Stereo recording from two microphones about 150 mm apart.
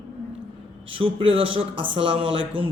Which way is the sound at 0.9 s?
35° right (ahead or behind).